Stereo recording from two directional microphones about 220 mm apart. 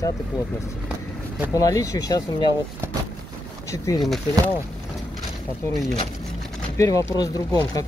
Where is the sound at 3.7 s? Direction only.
15° left (ahead or behind).